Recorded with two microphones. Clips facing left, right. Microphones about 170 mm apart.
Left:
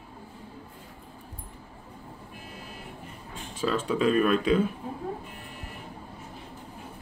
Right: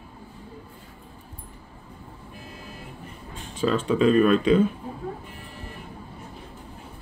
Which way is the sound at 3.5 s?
5° left (ahead or behind).